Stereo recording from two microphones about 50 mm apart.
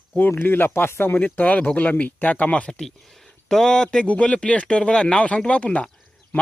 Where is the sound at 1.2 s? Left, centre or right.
Left.